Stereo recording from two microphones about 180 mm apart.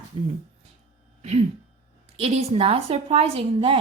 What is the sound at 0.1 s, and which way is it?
Speech, 35° right (ahead or behind).